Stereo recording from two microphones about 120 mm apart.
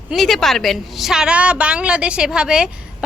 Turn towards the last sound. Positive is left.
turn(degrees=-5)  # may be behind; listen again after turning